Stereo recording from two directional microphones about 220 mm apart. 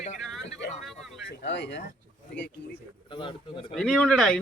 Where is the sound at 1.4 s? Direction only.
50° left (ahead or behind).